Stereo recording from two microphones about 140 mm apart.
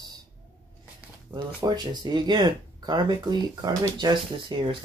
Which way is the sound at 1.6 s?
30° right (ahead or behind).